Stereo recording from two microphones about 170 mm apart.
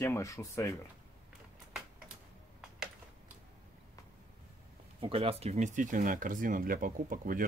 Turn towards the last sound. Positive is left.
turn(degrees=-55)  # may be behind; listen again after turning